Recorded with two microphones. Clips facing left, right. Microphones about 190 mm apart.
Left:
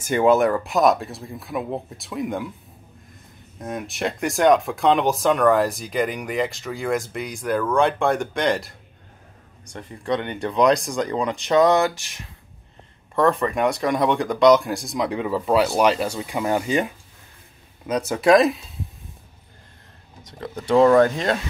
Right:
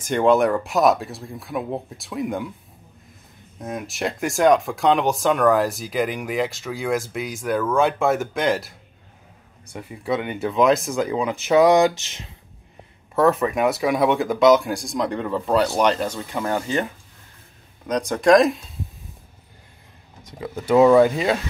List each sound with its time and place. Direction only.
0.0 s speech: 5° left (ahead or behind)
3.5 s speech: centre (ahead or behind); by 12.3 s 20° right (ahead or behind)
13.1 s speech: 5° right (ahead or behind)
20.2 s speech: 10° right (ahead or behind)